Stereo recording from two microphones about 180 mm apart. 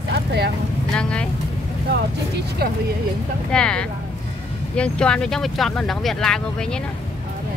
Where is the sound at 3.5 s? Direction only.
5° left (ahead or behind).